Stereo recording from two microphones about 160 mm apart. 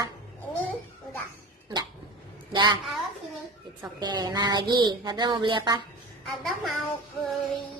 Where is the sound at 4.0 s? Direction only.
25° right (ahead or behind).